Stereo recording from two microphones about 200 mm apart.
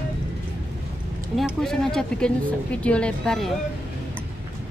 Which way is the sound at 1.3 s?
Centre (ahead or behind).